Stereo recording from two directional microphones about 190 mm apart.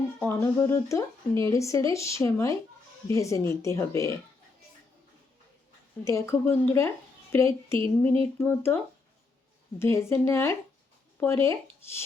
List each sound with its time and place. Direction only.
0.2 s a woman's voice: 10° left (ahead or behind)
6.1 s a woman's voice: 15° left (ahead or behind)